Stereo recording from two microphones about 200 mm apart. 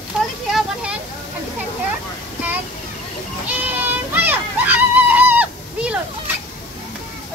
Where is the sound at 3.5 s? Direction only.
10° right (ahead or behind).